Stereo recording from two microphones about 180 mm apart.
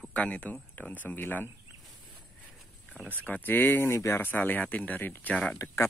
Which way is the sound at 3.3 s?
10° left (ahead or behind).